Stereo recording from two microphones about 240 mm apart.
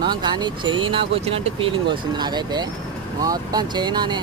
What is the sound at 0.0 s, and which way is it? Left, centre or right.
Speech, centre.